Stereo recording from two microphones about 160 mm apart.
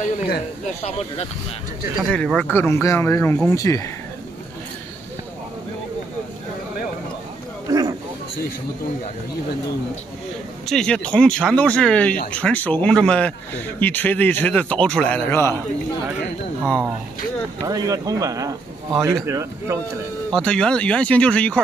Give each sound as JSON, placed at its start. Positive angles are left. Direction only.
{"t": 2.0, "sound": "a man's voice", "side_deg": 5}
{"t": 7.6, "sound": "a sound", "side_deg": -25}
{"t": 10.7, "sound": "a man's voice", "side_deg": 5}
{"t": 17.6, "sound": "a man's voice", "side_deg": -20}
{"t": 20.2, "sound": "a man's voice", "side_deg": 5}